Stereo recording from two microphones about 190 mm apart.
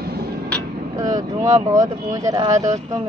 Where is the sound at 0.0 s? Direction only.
55° right (ahead or behind).